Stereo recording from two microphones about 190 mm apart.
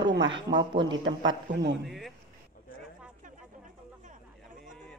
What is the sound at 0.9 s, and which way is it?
Speech, 75° right (ahead or behind).